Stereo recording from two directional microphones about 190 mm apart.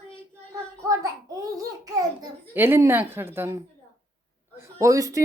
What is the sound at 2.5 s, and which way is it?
A woman's voice, 10° right (ahead or behind).